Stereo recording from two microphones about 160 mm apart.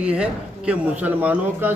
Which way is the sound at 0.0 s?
5° right (ahead or behind).